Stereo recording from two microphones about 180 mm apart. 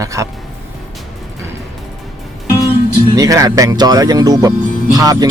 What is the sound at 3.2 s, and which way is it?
Speech, 20° right (ahead or behind).